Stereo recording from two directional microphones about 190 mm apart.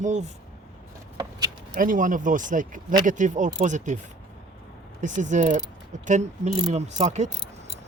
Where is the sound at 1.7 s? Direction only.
45° right (ahead or behind).